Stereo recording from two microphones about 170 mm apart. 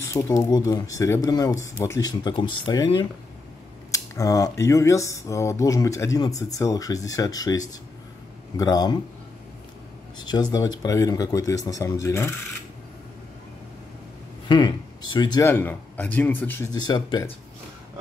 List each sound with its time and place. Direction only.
0.0 s speech: 20° left (ahead or behind)
10.1 s speech: 25° left (ahead or behind)
14.5 s speech: 25° left (ahead or behind)
15.4 s speech: 10° left (ahead or behind)